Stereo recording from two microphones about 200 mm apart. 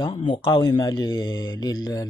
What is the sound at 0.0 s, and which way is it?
Speech, 25° left (ahead or behind).